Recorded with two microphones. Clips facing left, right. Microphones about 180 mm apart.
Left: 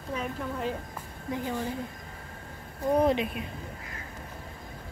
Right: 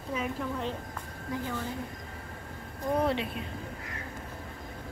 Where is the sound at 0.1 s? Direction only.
Centre (ahead or behind).